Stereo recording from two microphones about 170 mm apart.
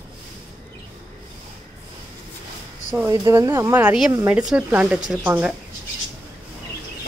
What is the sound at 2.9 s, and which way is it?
A woman's voice, 10° right (ahead or behind).